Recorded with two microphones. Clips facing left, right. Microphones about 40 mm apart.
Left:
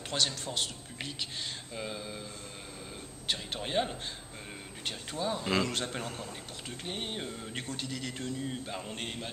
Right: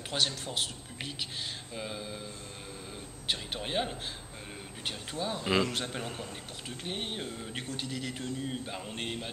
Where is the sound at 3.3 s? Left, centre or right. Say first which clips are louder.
Even; centre.